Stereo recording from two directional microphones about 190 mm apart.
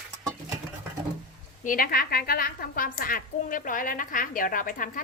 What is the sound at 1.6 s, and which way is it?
A woman's voice, 45° left (ahead or behind).